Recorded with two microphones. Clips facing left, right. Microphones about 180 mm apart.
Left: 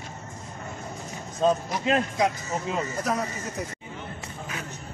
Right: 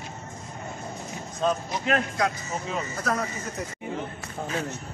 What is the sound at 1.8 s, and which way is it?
Speech, 20° left (ahead or behind).